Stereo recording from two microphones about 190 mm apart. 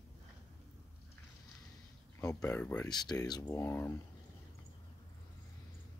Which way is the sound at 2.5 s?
10° left (ahead or behind).